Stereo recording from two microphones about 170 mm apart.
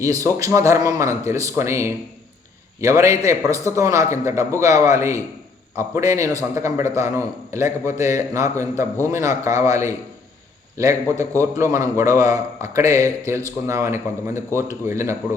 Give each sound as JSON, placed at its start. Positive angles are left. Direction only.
{"t": 0.0, "sound": "a man's voice", "side_deg": -20}